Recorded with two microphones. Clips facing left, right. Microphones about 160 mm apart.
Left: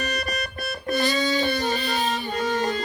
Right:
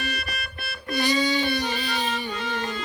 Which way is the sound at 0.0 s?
40° left (ahead or behind).